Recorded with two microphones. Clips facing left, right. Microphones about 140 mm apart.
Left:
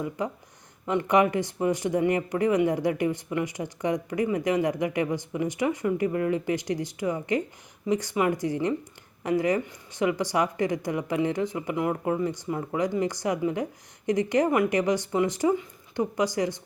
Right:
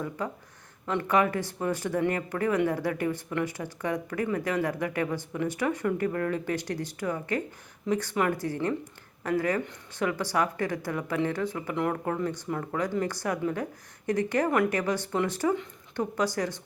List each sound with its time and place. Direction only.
0.2 s speech: 15° left (ahead or behind)